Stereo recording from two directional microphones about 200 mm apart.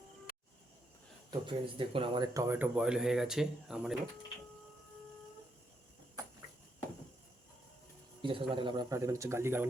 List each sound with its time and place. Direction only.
1.3 s speech: 25° right (ahead or behind); by 3.9 s centre (ahead or behind)
8.2 s speech: 25° right (ahead or behind)